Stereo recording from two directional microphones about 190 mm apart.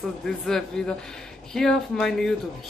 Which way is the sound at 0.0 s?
Centre (ahead or behind).